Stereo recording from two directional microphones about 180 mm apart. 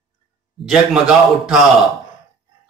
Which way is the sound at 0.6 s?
Centre (ahead or behind).